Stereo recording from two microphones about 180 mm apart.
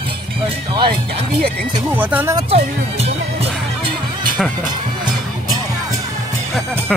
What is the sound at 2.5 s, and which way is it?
Music, 35° right (ahead or behind).